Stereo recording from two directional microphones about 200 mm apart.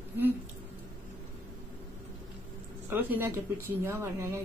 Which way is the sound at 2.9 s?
10° right (ahead or behind).